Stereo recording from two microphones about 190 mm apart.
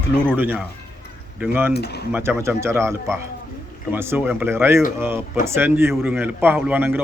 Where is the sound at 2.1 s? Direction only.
10° right (ahead or behind).